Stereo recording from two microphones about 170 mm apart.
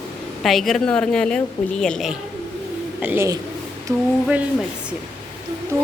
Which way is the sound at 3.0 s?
10° right (ahead or behind).